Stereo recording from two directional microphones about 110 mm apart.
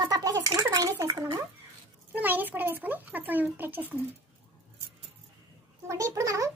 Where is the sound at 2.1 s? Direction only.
15° right (ahead or behind).